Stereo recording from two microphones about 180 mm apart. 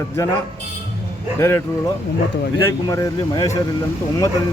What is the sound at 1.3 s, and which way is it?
Speech, 15° left (ahead or behind).